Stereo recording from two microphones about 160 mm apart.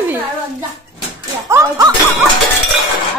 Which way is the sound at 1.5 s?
20° right (ahead or behind).